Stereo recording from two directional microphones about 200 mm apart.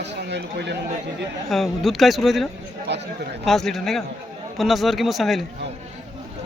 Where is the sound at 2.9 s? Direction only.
60° right (ahead or behind).